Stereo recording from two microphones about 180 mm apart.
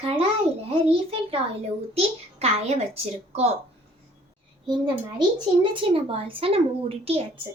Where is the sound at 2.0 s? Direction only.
35° right (ahead or behind).